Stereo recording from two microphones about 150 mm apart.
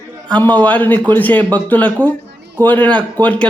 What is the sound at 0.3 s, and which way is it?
Speech, 10° left (ahead or behind).